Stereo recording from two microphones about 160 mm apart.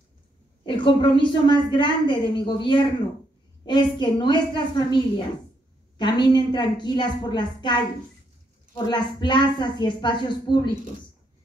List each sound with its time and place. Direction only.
0.7 s a woman's voice: 30° left (ahead or behind)